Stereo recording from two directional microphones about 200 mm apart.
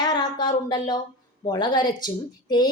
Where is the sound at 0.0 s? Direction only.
20° left (ahead or behind).